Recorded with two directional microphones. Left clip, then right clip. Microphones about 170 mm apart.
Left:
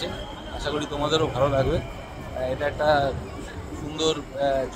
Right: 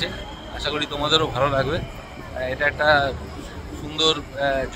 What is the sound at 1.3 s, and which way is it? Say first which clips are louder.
Speech: right 1 dB; 30° right (ahead or behind).